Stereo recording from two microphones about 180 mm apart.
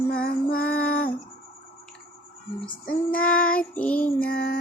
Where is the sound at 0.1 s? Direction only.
60° left (ahead or behind).